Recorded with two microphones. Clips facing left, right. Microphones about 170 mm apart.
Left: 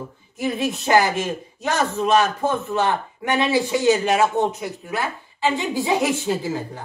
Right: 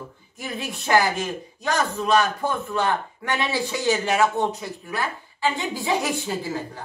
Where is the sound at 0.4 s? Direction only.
20° left (ahead or behind).